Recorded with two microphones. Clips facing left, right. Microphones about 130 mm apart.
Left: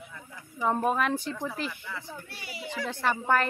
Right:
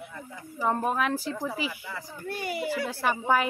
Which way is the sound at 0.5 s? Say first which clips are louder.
Even; centre (ahead or behind).